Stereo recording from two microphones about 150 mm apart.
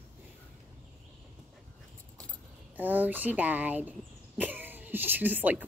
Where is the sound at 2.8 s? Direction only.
10° right (ahead or behind).